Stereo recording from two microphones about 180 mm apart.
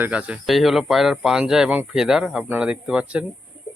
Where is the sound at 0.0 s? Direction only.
5° right (ahead or behind).